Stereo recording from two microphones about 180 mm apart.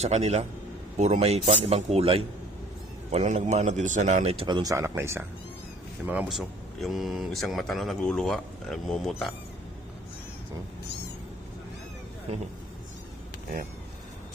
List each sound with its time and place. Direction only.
0.0 s a man's voice: 35° right (ahead or behind); by 9.3 s centre (ahead or behind)